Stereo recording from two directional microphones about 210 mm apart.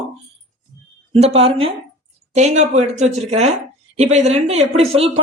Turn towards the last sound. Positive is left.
turn(degrees=-30)  # may be behind; listen again after turning